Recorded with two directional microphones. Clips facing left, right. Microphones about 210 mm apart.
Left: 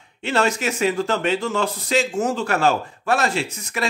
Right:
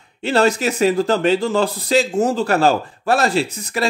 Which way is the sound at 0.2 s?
35° right (ahead or behind).